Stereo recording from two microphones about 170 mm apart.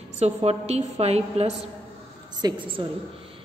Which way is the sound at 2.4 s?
25° right (ahead or behind).